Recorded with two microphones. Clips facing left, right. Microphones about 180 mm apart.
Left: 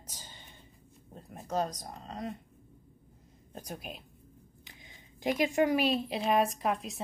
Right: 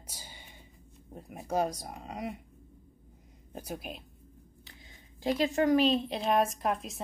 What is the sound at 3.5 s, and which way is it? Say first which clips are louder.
Speech: right 3 dB; 5° right (ahead or behind).